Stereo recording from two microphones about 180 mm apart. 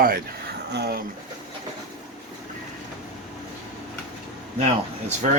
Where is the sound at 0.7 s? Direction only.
65° right (ahead or behind).